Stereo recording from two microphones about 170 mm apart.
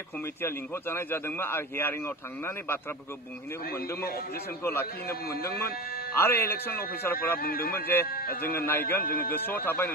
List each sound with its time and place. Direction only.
0.4 s a man's voice: 15° left (ahead or behind)
6.1 s a man's voice: 15° left (ahead or behind)
7.4 s speech: 60° left (ahead or behind)
8.5 s a man's voice: 10° left (ahead or behind)
9.0 s speech: 60° left (ahead or behind)
9.3 s a man's voice: 10° left (ahead or behind)